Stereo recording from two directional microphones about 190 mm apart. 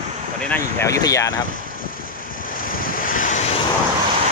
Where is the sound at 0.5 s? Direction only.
15° left (ahead or behind).